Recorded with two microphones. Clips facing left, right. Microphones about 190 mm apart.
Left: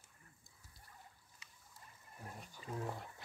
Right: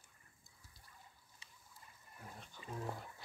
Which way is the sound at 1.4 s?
30° right (ahead or behind).